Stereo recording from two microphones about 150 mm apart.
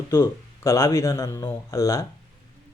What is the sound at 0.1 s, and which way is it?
Speech, 20° left (ahead or behind).